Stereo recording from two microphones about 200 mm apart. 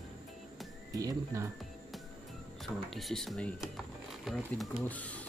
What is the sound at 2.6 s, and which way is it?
Speech, centre (ahead or behind).